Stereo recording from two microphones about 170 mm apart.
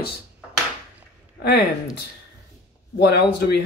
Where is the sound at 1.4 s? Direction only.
70° left (ahead or behind).